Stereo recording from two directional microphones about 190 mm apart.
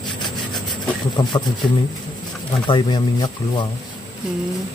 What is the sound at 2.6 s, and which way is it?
Speech, 25° left (ahead or behind).